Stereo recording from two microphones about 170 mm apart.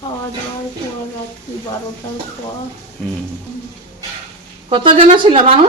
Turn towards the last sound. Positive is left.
turn(degrees=-35)  # may be behind; listen again after turning